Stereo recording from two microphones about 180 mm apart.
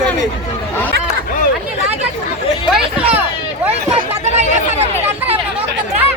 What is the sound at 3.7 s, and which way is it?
Hubbub, 35° right (ahead or behind).